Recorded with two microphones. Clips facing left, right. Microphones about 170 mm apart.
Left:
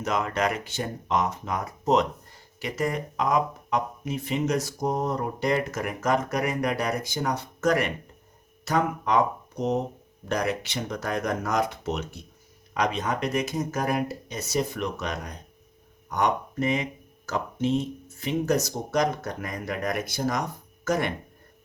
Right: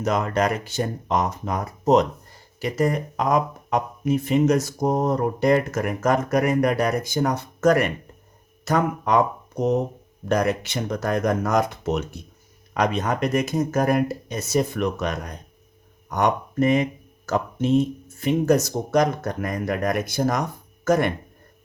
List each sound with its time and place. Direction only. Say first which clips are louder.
0.0 s speech: right 4 dB; 40° right (ahead or behind)